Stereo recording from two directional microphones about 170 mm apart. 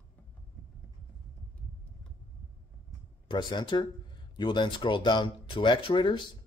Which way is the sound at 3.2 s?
25° left (ahead or behind).